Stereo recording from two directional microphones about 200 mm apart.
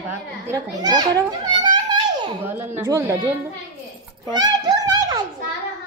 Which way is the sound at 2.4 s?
10° right (ahead or behind).